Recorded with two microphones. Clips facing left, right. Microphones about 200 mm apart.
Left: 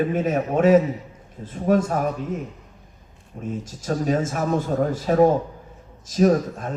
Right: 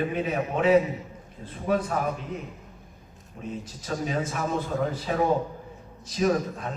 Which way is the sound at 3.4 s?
45° left (ahead or behind).